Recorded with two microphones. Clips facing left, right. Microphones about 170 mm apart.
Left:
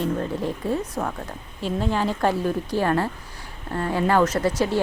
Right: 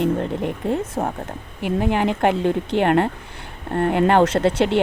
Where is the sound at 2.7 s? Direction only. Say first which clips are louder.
Right 5 dB; 65° right (ahead or behind).